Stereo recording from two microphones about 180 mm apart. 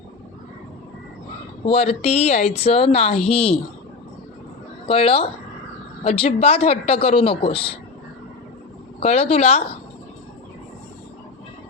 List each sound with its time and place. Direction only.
1.6 s a woman's voice: 35° left (ahead or behind)
4.9 s a woman's voice: 30° left (ahead or behind)
9.0 s a woman's voice: 35° left (ahead or behind)